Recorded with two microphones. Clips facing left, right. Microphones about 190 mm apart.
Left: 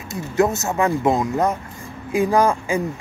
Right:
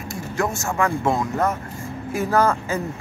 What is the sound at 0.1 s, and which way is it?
Speech, 20° left (ahead or behind).